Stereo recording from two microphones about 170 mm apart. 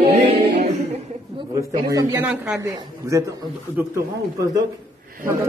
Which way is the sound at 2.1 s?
10° right (ahead or behind).